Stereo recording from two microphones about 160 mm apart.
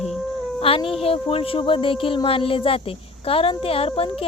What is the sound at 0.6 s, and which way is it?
Speech, 35° left (ahead or behind).